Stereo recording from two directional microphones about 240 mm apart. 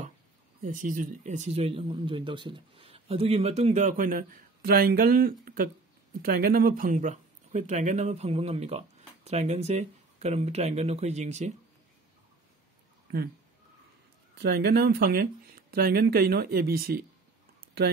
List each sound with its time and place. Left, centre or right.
0.6 s speech: right
14.4 s speech: right